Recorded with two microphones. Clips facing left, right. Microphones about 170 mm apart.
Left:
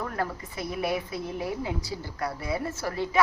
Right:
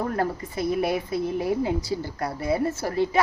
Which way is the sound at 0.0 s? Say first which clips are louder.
Right 5 dB; 35° right (ahead or behind).